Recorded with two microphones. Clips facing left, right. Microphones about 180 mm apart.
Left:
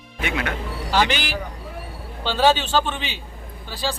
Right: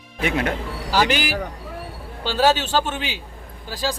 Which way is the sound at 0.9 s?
5° right (ahead or behind).